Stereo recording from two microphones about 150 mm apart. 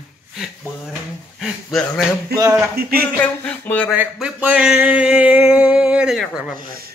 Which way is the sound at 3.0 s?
10° left (ahead or behind).